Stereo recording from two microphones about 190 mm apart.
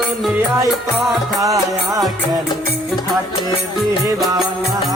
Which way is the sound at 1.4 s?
15° right (ahead or behind).